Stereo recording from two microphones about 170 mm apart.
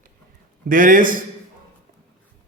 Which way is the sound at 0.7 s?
55° right (ahead or behind).